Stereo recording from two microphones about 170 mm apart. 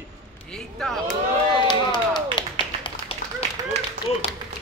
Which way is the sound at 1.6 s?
25° left (ahead or behind).